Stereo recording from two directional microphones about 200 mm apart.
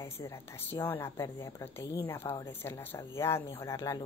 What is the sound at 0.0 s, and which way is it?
A woman's voice, 15° left (ahead or behind).